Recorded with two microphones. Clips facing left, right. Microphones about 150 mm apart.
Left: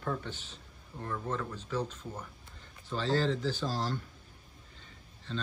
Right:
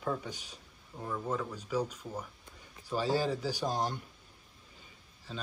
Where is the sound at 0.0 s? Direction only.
10° right (ahead or behind).